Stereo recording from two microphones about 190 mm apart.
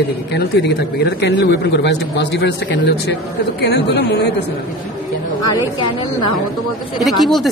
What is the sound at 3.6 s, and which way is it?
Speech, 65° left (ahead or behind).